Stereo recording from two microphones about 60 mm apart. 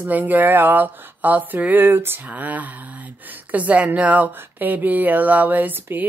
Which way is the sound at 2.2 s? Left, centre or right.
Right.